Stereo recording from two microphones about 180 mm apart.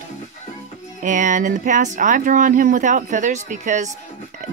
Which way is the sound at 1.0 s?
45° right (ahead or behind).